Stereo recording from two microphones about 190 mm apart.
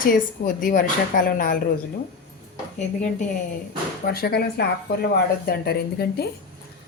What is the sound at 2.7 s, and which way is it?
Speech, 40° left (ahead or behind).